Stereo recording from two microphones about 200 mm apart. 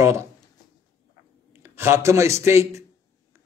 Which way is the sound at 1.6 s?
10° right (ahead or behind).